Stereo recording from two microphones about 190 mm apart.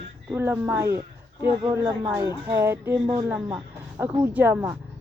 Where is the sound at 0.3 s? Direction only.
10° right (ahead or behind).